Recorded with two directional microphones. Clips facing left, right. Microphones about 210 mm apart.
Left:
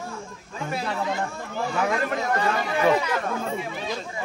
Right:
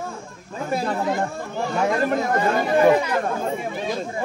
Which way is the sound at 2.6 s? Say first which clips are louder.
Right 7 dB; 45° right (ahead or behind).